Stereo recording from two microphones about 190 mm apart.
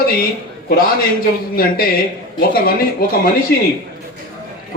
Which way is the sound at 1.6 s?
50° left (ahead or behind).